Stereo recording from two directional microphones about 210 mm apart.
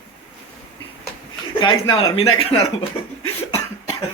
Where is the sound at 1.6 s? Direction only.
25° left (ahead or behind).